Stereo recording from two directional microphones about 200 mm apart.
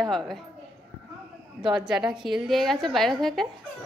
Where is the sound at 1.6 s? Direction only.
5° right (ahead or behind).